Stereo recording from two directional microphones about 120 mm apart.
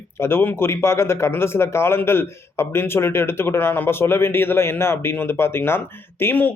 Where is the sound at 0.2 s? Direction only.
20° left (ahead or behind).